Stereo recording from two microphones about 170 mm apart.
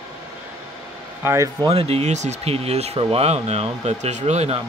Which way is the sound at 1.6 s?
35° right (ahead or behind).